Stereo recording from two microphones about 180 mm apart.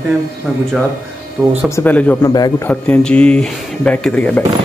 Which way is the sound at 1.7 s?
10° left (ahead or behind).